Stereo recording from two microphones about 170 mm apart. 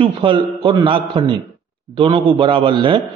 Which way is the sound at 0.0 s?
30° right (ahead or behind).